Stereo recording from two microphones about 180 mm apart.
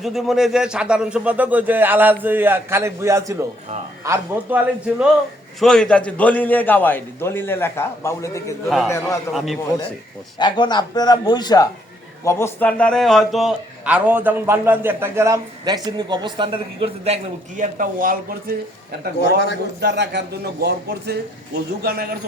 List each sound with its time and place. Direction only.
0.0 s a man's voice: centre (ahead or behind)
5.5 s a man's voice: centre (ahead or behind)
10.3 s a man's voice: 25° left (ahead or behind); by 17.2 s 35° right (ahead or behind)
17.6 s speech: 50° right (ahead or behind)
19.2 s a man's voice: 75° left (ahead or behind)
19.8 s a man's voice: 70° right (ahead or behind)